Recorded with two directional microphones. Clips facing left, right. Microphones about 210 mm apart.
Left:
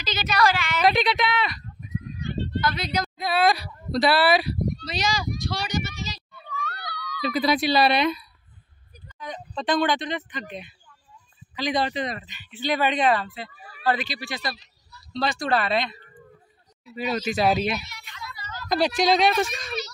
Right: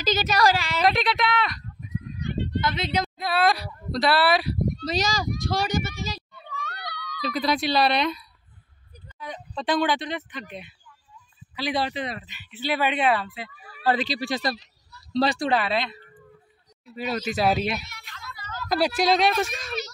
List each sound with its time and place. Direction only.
0.0 s a woman's voice: 45° right (ahead or behind)
0.8 s speech: centre (ahead or behind)
2.2 s a sound: 20° right (ahead or behind)
3.2 s speech: centre (ahead or behind)
4.7 s a child's voice: 45° right (ahead or behind)
6.8 s a child's voice: centre (ahead or behind)
9.2 s speech: 10° right (ahead or behind)
11.5 s speech: 5° right (ahead or behind)
13.8 s a woman's voice: 35° right (ahead or behind)
15.5 s a woman's voice: 5° right (ahead or behind)